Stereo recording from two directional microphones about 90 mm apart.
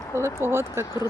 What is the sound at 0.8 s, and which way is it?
Speech, 45° left (ahead or behind).